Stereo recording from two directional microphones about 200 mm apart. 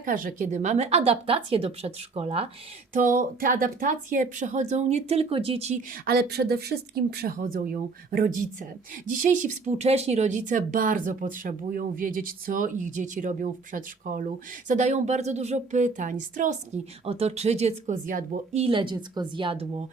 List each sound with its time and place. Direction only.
0.0 s speech: 40° right (ahead or behind)
3.4 s speech: 40° right (ahead or behind)
6.1 s speech: 55° right (ahead or behind)
18.6 s a woman's voice: 25° right (ahead or behind)